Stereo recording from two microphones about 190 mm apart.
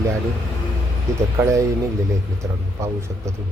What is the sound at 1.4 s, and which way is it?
Speech, 15° right (ahead or behind).